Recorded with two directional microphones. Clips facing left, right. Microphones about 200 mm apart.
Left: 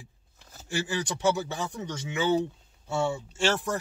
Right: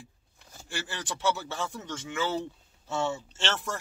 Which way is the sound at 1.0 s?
15° left (ahead or behind).